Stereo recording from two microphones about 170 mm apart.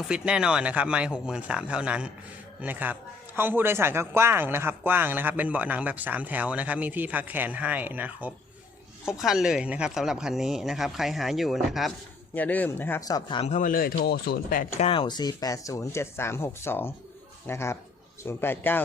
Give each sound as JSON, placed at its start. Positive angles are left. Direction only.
{"t": 0.1, "sound": "a man's voice", "side_deg": -5}
{"t": 12.3, "sound": "speech", "side_deg": 10}
{"t": 13.4, "sound": "speech", "side_deg": 45}
{"t": 14.8, "sound": "speech", "side_deg": 30}